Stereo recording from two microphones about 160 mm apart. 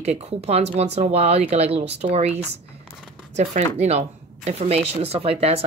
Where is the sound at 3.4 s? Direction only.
45° right (ahead or behind).